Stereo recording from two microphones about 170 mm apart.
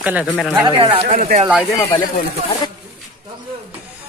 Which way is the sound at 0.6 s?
35° right (ahead or behind).